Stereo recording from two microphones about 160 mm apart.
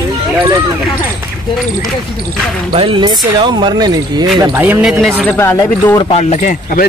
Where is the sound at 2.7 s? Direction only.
35° right (ahead or behind).